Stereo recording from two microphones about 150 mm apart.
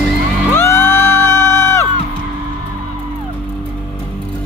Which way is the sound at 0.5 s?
15° left (ahead or behind).